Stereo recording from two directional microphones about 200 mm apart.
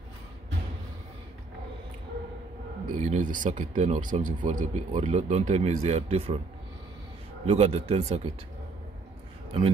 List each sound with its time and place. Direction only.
2.9 s speech: 40° right (ahead or behind)
7.4 s speech: 30° right (ahead or behind)
9.5 s a man's voice: 25° right (ahead or behind)